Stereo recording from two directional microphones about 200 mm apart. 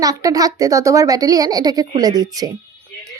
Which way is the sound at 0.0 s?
15° right (ahead or behind).